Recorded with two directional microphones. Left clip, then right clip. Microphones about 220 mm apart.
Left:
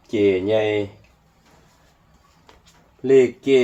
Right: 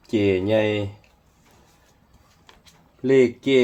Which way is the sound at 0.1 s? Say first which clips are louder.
Left 2 dB; 45° right (ahead or behind).